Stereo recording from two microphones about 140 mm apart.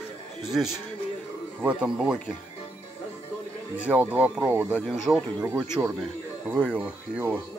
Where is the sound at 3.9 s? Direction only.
10° right (ahead or behind).